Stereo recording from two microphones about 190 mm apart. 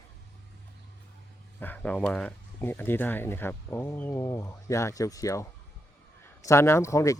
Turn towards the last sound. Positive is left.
turn(degrees=15)  # may be behind; listen again after turning